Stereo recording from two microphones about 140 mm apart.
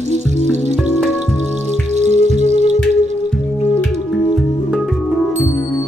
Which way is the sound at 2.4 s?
45° left (ahead or behind).